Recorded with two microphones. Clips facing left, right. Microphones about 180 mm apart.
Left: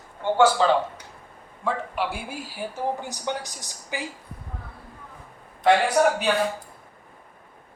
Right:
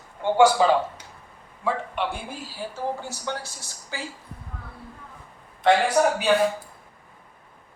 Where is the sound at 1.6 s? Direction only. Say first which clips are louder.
Even; 5° left (ahead or behind).